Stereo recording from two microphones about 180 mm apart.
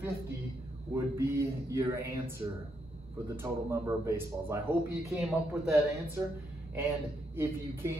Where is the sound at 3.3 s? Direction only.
15° right (ahead or behind).